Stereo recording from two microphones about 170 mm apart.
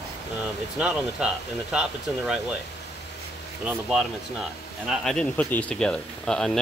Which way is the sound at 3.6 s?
Centre (ahead or behind).